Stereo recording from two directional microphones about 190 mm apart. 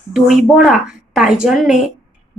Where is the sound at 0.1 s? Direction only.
Centre (ahead or behind).